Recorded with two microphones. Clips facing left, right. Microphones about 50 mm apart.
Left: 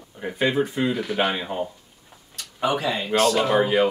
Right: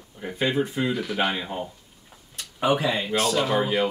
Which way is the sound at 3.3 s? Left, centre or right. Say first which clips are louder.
Left 3 dB; centre.